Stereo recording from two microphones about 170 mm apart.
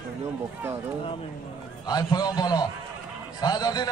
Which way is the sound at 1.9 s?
25° left (ahead or behind).